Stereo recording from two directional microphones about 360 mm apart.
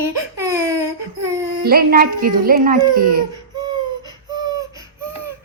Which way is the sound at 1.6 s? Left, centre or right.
Right.